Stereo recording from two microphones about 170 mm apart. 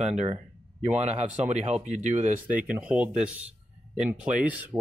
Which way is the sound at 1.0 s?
40° right (ahead or behind).